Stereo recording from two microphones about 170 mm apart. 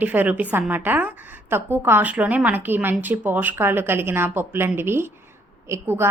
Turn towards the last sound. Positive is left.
turn(degrees=-15)  # may be behind; listen again after turning